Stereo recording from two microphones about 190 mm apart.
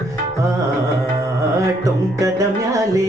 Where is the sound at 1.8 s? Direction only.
15° right (ahead or behind).